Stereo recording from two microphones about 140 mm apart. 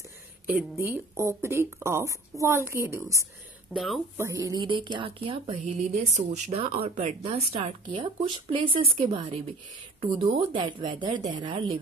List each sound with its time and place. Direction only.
0.5 s speech: 15° right (ahead or behind)
3.7 s speech: centre (ahead or behind)
4.2 s speech: 25° right (ahead or behind); by 5.6 s 40° right (ahead or behind)
6.1 s speech: 55° right (ahead or behind); by 11.8 s 40° right (ahead or behind)